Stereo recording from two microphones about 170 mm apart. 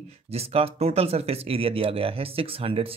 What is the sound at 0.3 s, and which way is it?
Speech, 35° right (ahead or behind).